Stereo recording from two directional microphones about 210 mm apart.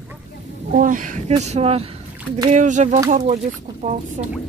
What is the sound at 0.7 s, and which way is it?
Speech, 40° right (ahead or behind).